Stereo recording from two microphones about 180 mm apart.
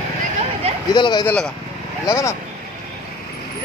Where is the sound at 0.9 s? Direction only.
25° left (ahead or behind).